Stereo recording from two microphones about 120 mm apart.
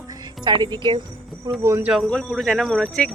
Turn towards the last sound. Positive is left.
turn(degrees=5)  # may be behind; listen again after turning